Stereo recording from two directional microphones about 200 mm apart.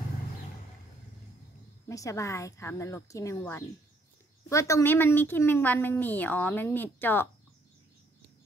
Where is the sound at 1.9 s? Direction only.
15° left (ahead or behind).